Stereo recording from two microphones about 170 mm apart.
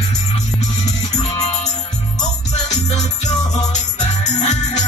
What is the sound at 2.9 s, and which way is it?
Music, 40° left (ahead or behind).